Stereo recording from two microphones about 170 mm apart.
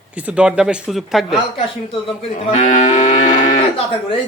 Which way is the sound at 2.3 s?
40° left (ahead or behind).